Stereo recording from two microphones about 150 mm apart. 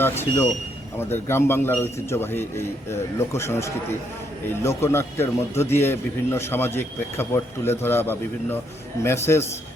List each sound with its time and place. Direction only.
0.9 s a man's voice: 15° left (ahead or behind)